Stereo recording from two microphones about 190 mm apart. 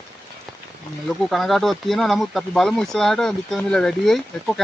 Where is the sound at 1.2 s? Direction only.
Centre (ahead or behind).